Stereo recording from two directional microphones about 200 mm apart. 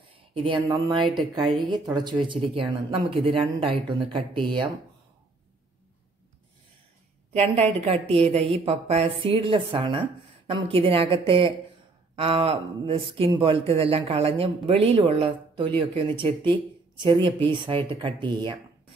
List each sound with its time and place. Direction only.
0.3 s a woman's voice: 25° right (ahead or behind)
7.3 s a woman's voice: 30° right (ahead or behind)